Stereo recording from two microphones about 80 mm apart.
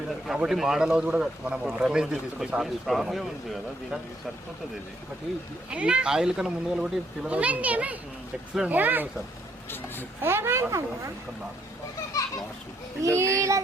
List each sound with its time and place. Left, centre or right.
0.3 s speech: centre
5.7 s speech: centre
10.2 s speech: right
13.0 s speech: right